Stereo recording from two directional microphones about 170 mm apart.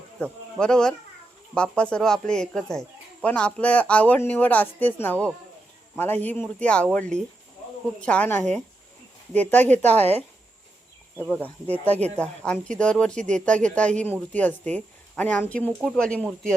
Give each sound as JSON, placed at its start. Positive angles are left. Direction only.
{"t": 0.6, "sound": "speech", "side_deg": 5}
{"t": 11.9, "sound": "speech", "side_deg": -40}
{"t": 12.1, "sound": "speech", "side_deg": 5}